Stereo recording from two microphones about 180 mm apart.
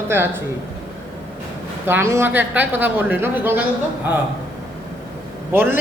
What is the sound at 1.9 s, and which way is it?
A man's voice, 15° right (ahead or behind).